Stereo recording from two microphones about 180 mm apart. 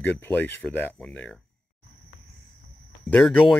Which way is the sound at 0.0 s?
10° left (ahead or behind).